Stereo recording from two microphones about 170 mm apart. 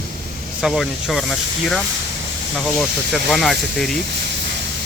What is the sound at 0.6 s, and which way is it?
Speech, centre (ahead or behind).